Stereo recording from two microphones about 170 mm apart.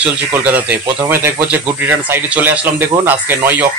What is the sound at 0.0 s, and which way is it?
Speech, 10° right (ahead or behind).